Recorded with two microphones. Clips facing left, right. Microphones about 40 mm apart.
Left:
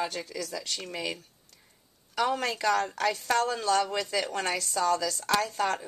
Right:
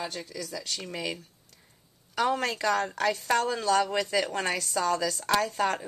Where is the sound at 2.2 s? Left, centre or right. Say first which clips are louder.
Right 1 dB; centre.